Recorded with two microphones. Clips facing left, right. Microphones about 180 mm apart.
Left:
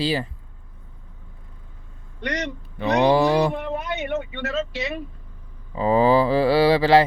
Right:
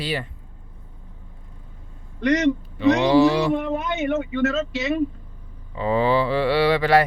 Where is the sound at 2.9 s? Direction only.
50° left (ahead or behind).